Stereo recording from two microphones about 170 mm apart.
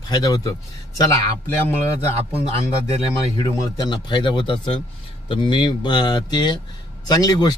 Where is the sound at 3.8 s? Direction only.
25° left (ahead or behind).